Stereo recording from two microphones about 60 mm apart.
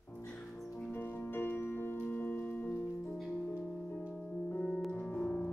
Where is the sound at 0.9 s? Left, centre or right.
Left.